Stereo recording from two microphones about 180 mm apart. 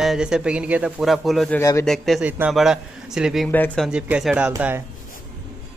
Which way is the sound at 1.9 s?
Centre (ahead or behind).